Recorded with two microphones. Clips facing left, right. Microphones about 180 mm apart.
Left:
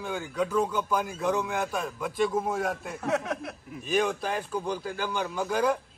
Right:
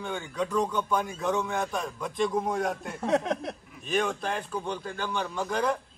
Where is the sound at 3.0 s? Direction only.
25° right (ahead or behind).